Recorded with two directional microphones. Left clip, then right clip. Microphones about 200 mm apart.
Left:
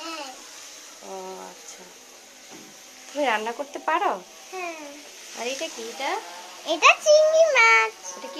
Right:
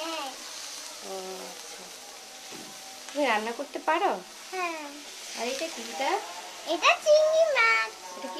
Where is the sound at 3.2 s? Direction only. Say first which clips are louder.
Left 2 dB; 5° right (ahead or behind).